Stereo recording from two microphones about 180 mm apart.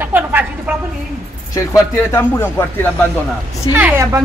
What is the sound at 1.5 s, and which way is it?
Speech, 15° left (ahead or behind).